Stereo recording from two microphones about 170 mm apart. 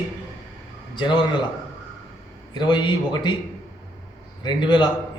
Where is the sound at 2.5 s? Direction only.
25° left (ahead or behind).